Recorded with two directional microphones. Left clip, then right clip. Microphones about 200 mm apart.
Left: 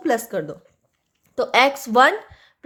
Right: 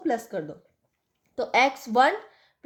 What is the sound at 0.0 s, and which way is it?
A woman's voice, 25° left (ahead or behind).